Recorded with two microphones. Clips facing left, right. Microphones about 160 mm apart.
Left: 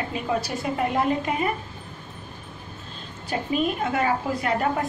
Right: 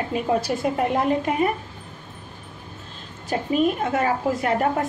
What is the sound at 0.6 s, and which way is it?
Speech, 50° right (ahead or behind).